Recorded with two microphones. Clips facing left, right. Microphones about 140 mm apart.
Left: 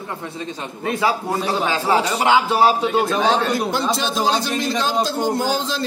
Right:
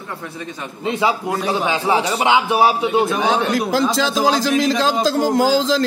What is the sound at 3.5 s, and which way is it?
A man's voice, 90° right.